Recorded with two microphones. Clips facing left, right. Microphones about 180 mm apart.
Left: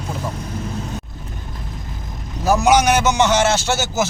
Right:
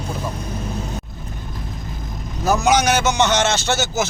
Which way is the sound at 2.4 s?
10° left (ahead or behind).